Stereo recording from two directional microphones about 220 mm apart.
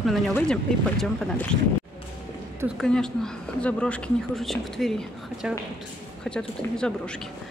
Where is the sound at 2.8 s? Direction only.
5° left (ahead or behind).